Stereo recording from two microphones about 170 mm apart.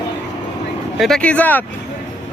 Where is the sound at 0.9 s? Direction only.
Centre (ahead or behind).